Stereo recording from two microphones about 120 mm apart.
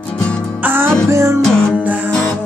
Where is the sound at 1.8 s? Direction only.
15° right (ahead or behind).